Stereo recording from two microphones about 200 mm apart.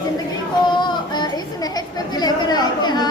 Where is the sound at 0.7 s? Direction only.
20° left (ahead or behind).